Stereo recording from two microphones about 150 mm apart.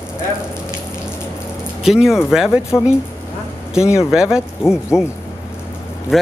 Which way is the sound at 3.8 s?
20° left (ahead or behind).